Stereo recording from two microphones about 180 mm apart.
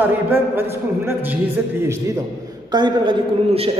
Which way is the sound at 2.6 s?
25° right (ahead or behind).